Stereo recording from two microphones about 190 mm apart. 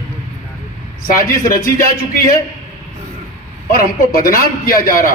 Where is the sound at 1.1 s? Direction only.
45° left (ahead or behind).